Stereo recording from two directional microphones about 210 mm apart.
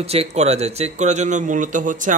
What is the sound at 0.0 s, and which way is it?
A man's voice, 30° right (ahead or behind).